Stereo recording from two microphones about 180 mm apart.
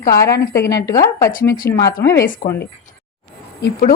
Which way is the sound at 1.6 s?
65° left (ahead or behind).